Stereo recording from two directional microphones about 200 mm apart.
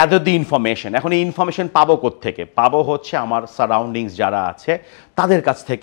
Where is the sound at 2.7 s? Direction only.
20° left (ahead or behind).